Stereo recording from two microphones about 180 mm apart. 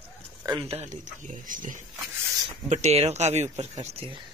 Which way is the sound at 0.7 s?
40° right (ahead or behind).